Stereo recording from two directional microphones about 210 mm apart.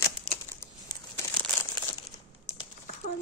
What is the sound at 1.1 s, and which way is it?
Crumpling, 15° left (ahead or behind).